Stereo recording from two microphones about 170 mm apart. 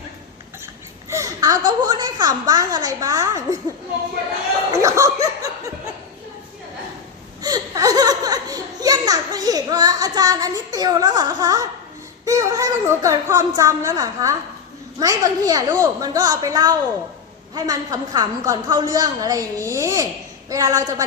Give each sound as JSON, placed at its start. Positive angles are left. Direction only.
{"t": 1.1, "sound": "a woman's voice", "side_deg": -20}
{"t": 4.7, "sound": "a woman's voice", "side_deg": -20}
{"t": 7.4, "sound": "a sound", "side_deg": -20}
{"t": 12.2, "sound": "a woman's voice", "side_deg": -20}